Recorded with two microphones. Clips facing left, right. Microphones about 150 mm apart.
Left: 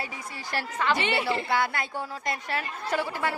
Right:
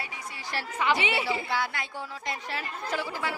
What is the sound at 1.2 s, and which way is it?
A woman's voice, 60° left (ahead or behind).